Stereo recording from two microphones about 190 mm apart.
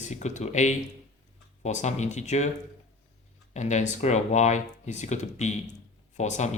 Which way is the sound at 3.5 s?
40° left (ahead or behind).